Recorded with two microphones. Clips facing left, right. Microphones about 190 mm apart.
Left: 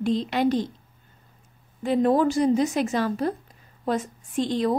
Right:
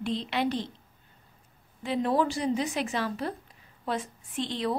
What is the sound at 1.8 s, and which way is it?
A woman's voice, 45° left (ahead or behind).